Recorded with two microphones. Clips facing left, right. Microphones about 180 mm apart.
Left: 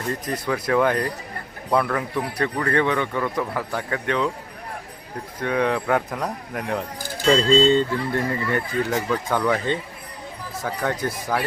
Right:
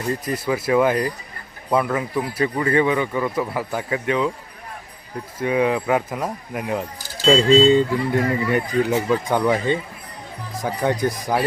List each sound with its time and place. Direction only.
0.1 s speech: 5° right (ahead or behind)
5.4 s speech: 5° right (ahead or behind)